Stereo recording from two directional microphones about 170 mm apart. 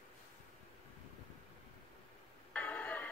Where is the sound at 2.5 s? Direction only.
10° left (ahead or behind).